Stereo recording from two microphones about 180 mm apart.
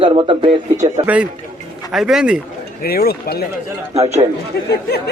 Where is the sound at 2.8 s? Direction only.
60° left (ahead or behind).